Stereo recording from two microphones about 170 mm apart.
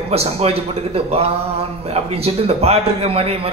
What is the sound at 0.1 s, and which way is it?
A man's voice, 35° right (ahead or behind).